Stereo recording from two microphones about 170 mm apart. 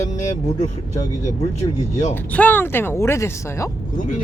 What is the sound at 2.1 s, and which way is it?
Speech, 10° left (ahead or behind).